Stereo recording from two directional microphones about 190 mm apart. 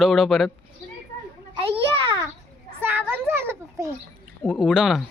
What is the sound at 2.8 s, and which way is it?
Children playing, 10° right (ahead or behind).